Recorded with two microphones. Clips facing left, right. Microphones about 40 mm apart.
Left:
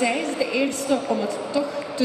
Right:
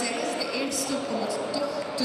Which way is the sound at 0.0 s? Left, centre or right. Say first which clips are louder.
Left 6 dB; left.